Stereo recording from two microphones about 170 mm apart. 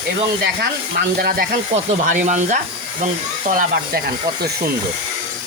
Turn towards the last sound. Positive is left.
turn(degrees=-55)  # may be behind; listen again after turning